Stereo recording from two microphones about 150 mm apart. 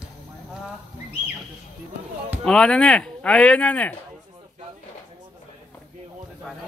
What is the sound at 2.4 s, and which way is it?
Speech, 5° left (ahead or behind).